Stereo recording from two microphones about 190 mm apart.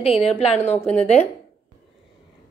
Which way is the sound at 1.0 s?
35° left (ahead or behind).